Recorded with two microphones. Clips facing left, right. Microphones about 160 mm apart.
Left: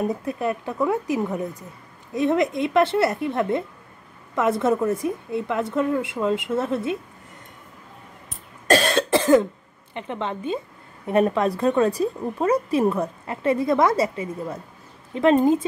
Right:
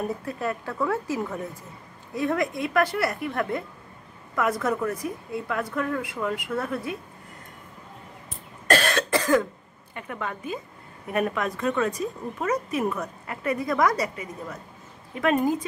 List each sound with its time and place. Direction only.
0.0 s speech: 20° left (ahead or behind)
8.6 s cough: 25° left (ahead or behind)
9.9 s speech: 25° left (ahead or behind)